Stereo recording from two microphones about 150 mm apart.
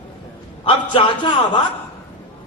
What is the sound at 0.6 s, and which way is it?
Speech, 35° left (ahead or behind).